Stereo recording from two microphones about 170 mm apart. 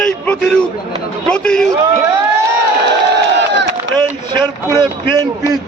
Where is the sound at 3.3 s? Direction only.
90° right.